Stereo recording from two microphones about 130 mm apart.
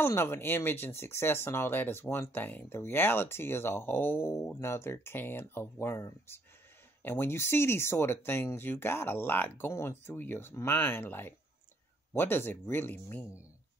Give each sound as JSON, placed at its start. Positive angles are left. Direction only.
{"t": 0.0, "sound": "speech", "side_deg": 20}